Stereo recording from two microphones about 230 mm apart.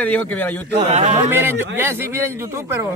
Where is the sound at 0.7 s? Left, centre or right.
Right.